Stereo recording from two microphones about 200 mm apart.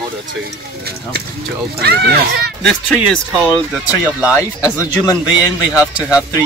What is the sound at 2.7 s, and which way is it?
Speech, 5° left (ahead or behind).